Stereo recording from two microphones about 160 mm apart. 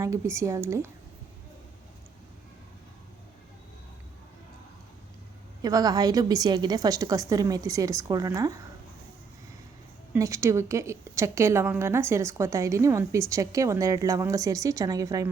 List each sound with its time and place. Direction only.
0.0 s a woman's voice: 20° right (ahead or behind)
5.6 s a woman's voice: 25° right (ahead or behind)
10.2 s a woman's voice: 20° right (ahead or behind)